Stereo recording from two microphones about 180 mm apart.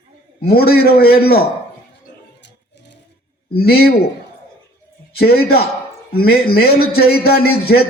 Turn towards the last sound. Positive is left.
turn(degrees=60)  # may be behind; listen again after turning